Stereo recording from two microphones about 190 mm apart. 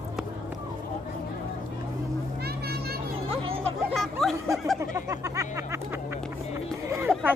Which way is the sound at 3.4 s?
30° right (ahead or behind).